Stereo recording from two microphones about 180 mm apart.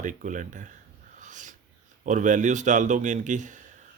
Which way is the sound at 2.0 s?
45° right (ahead or behind).